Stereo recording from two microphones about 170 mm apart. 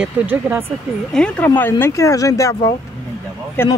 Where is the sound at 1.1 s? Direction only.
5° left (ahead or behind).